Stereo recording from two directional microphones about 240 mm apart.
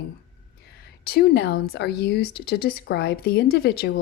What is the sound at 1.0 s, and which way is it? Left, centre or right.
A woman's voice, left.